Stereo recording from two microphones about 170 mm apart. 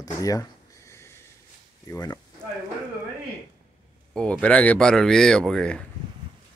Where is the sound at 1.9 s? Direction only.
20° left (ahead or behind).